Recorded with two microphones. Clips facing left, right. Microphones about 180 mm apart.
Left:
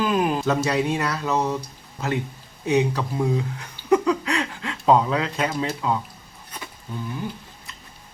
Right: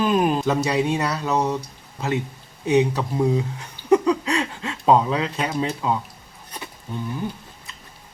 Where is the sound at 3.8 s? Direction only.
30° right (ahead or behind).